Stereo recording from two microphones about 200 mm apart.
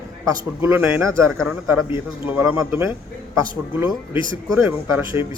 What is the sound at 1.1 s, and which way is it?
Speech, 5° left (ahead or behind).